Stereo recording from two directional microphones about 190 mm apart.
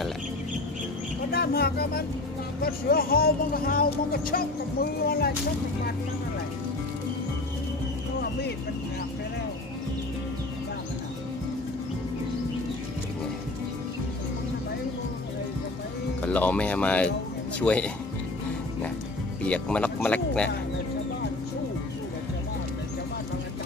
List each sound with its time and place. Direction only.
1.3 s speech: 55° left (ahead or behind)
16.2 s speech: 10° left (ahead or behind)
19.4 s speech: 5° left (ahead or behind)